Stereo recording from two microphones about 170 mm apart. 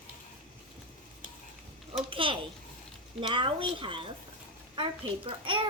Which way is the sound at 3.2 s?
30° right (ahead or behind).